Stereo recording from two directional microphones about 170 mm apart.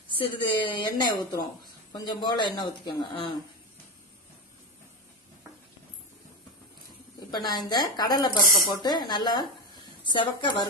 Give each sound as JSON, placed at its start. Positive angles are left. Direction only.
{"t": 0.2, "sound": "speech", "side_deg": 30}
{"t": 7.2, "sound": "speech", "side_deg": 25}